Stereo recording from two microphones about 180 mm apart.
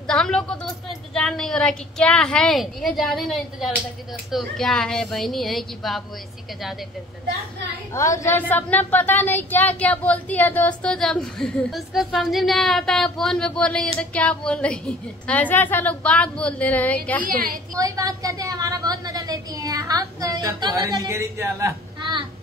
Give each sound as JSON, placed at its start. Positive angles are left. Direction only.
{"t": 0.0, "sound": "a woman's voice", "side_deg": 5}
{"t": 7.9, "sound": "a woman's voice", "side_deg": 15}
{"t": 17.3, "sound": "a woman's voice", "side_deg": -50}
{"t": 17.7, "sound": "a woman's voice", "side_deg": -20}